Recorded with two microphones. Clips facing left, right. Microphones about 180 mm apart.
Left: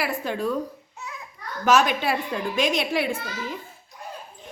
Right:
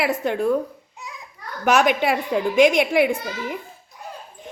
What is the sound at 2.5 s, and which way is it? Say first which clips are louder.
A child's voice: right 8 dB; 15° right (ahead or behind).